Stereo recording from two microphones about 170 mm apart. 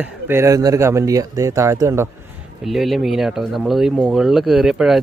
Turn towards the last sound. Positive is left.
turn(degrees=0)  # may be behind; listen again after turning